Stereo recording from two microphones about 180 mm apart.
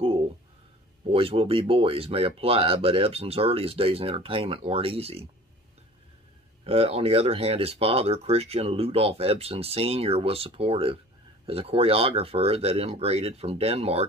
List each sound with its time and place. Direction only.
1.1 s speech: 30° right (ahead or behind)
6.6 s speech: 35° right (ahead or behind)